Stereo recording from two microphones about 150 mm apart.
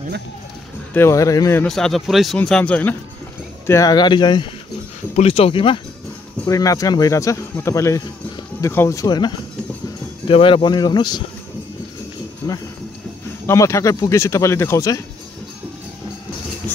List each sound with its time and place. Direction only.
0.9 s speech: 20° left (ahead or behind)
1.6 s a man's voice: 5° left (ahead or behind)
3.6 s speech: 20° left (ahead or behind)
5.1 s speech: 40° left (ahead or behind)
6.4 s speech: 20° left (ahead or behind)
12.4 s speech: 20° left (ahead or behind)